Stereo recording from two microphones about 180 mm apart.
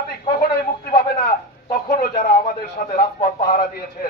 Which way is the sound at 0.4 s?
60° left (ahead or behind).